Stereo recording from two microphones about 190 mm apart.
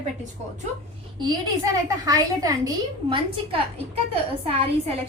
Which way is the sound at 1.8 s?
20° right (ahead or behind).